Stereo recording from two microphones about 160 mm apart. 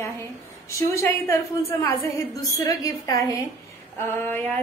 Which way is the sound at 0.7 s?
20° left (ahead or behind).